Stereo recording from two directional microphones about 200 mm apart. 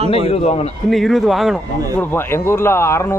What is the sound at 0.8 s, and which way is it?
A man's voice, centre (ahead or behind).